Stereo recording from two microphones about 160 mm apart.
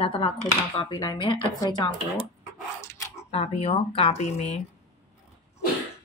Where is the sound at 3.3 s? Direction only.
40° left (ahead or behind).